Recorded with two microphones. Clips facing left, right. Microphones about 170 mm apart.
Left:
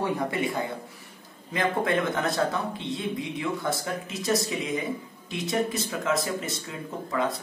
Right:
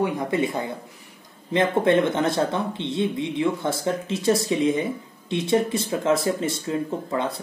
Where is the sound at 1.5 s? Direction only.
25° right (ahead or behind).